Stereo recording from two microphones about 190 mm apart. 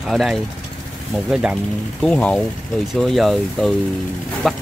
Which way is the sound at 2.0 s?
5° left (ahead or behind).